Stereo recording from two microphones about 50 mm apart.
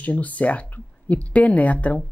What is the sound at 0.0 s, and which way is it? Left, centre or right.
A woman's voice, left.